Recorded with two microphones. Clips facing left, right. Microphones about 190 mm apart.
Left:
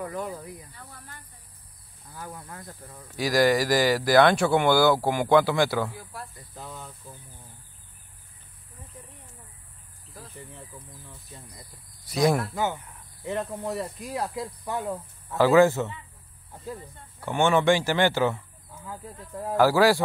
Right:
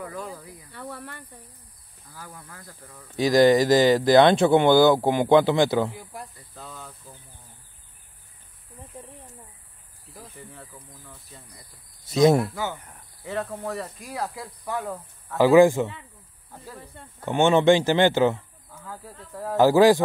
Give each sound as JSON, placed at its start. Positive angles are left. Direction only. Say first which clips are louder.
{"t": 0.1, "sound": "speech", "louder": "left 3 dB", "side_deg": 20}
{"t": 0.7, "sound": "speech", "louder": "right 10 dB", "side_deg": -70}
{"t": 2.1, "sound": "speech", "louder": "left 4 dB", "side_deg": 20}
{"t": 3.2, "sound": "speech", "louder": "right 5 dB", "side_deg": -20}
{"t": 6.5, "sound": "speech", "louder": "left 2 dB", "side_deg": 15}
{"t": 12.1, "sound": "speech", "louder": "right 5 dB", "side_deg": -25}
{"t": 13.2, "sound": "speech", "louder": "even", "side_deg": 20}
{"t": 15.3, "sound": "a man's voice", "louder": "right 3 dB", "side_deg": -15}
{"t": 17.2, "sound": "speech", "louder": "right 3 dB", "side_deg": -20}
{"t": 18.9, "sound": "speech", "louder": "left 1 dB", "side_deg": 20}
{"t": 19.5, "sound": "speech", "louder": "right 4 dB", "side_deg": -20}